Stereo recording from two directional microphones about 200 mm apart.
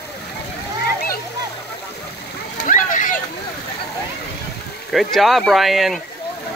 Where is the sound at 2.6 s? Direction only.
40° left (ahead or behind).